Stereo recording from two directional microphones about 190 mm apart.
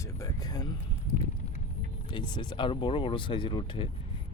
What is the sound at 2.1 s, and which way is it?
Speech, 25° left (ahead or behind).